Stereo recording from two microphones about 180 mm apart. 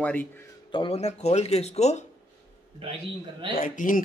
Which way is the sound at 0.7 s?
30° left (ahead or behind).